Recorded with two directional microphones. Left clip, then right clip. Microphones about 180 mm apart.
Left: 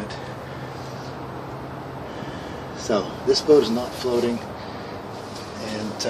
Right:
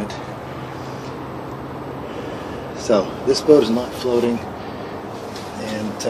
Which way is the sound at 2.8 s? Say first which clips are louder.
Right 4 dB; 10° right (ahead or behind).